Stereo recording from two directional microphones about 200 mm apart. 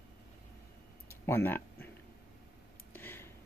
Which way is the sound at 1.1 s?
10° left (ahead or behind).